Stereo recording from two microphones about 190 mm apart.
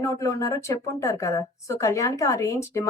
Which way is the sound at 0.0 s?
15° left (ahead or behind).